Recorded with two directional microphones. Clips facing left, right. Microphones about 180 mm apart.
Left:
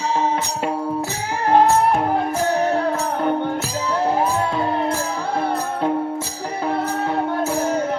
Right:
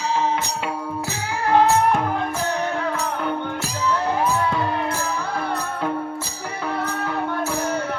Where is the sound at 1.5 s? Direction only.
35° left (ahead or behind).